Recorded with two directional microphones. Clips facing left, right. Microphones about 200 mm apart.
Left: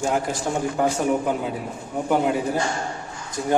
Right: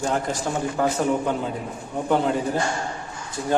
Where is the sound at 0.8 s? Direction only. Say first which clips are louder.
Even; 10° left (ahead or behind).